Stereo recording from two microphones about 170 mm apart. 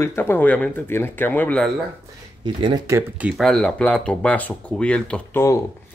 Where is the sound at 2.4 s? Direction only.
25° right (ahead or behind).